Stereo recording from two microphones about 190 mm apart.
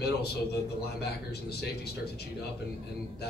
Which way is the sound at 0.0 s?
60° left (ahead or behind).